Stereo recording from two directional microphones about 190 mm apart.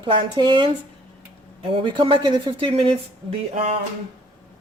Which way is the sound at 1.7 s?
25° right (ahead or behind).